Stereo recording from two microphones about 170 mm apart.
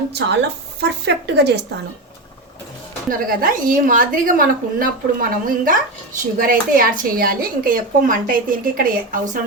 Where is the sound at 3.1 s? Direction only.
55° right (ahead or behind).